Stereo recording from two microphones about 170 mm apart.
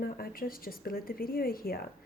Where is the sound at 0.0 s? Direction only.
60° left (ahead or behind).